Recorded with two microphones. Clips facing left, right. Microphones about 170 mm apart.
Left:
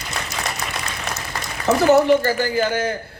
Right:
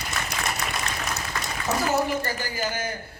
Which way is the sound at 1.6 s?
70° left (ahead or behind).